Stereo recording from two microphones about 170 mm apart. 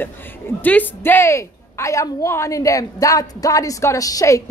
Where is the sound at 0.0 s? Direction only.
10° left (ahead or behind).